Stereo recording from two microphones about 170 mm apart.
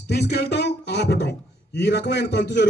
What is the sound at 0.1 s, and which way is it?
A man's voice, 75° left (ahead or behind).